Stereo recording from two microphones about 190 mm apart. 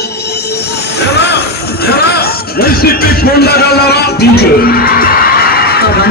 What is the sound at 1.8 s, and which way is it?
Music, 55° left (ahead or behind).